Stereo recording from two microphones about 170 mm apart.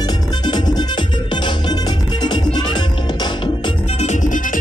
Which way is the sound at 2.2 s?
25° left (ahead or behind).